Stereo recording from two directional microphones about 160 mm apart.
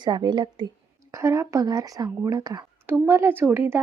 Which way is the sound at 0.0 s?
30° right (ahead or behind).